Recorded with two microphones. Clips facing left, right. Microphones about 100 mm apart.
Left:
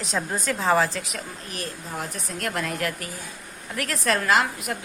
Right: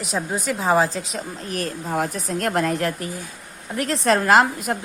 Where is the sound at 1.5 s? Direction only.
45° right (ahead or behind).